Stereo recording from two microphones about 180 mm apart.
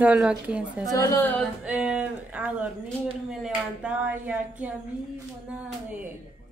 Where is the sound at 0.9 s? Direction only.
15° left (ahead or behind).